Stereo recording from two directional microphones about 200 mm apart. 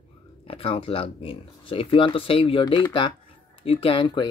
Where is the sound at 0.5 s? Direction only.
30° left (ahead or behind).